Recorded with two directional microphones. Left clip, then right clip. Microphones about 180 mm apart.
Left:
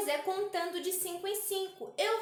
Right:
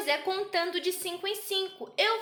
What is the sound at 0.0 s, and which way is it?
A woman's voice, 20° right (ahead or behind).